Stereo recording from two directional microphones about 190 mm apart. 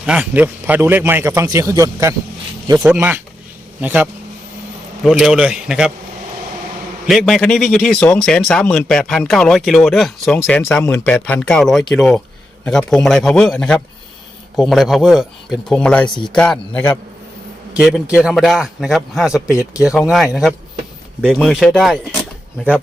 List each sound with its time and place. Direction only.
0.0 s a man's voice: 5° right (ahead or behind)
7.1 s speech: centre (ahead or behind)
16.0 s speech: 25° left (ahead or behind)
16.3 s speech: 5° left (ahead or behind)
17.7 s speech: 5° right (ahead or behind)